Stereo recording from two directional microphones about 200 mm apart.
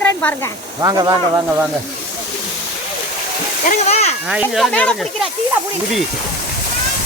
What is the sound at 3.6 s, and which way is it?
Speech, 35° left (ahead or behind).